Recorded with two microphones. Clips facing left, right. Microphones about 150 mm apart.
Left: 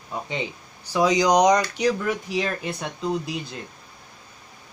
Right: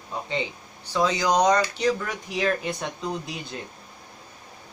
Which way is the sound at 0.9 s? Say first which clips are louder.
Left 4 dB; 15° left (ahead or behind).